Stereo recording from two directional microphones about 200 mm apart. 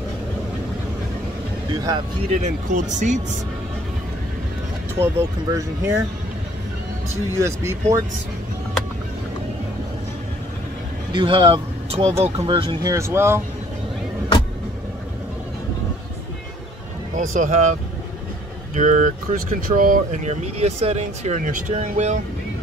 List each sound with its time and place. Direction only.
1.7 s speech: 20° right (ahead or behind)
2.3 s speech: 35° right (ahead or behind)
4.9 s speech: 15° right (ahead or behind)
7.3 s speech: 15° right (ahead or behind)
11.1 s speech: 25° right (ahead or behind)
12.9 s speech: 15° right (ahead or behind)
17.3 s speech: 40° right (ahead or behind)
18.8 s speech: 35° right (ahead or behind)